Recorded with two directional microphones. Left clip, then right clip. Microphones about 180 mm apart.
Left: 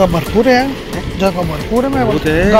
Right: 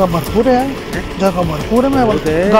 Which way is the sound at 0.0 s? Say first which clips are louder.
Left 2 dB; 10° left (ahead or behind).